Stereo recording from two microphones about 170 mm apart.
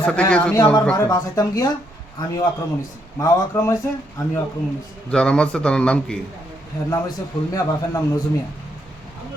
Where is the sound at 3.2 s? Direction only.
15° left (ahead or behind).